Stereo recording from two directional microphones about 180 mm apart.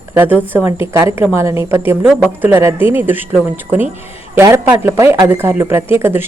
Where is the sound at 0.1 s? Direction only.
10° right (ahead or behind).